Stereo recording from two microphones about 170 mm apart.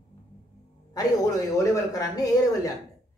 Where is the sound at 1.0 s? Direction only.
20° left (ahead or behind).